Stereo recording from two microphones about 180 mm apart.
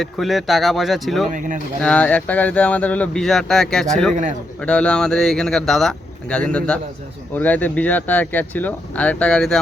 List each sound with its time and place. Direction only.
0.0 s speech: centre (ahead or behind)
1.3 s speech: 45° right (ahead or behind)
1.8 s speech: 5° left (ahead or behind)
4.1 s speech: 45° right (ahead or behind)
4.6 s speech: 5° left (ahead or behind)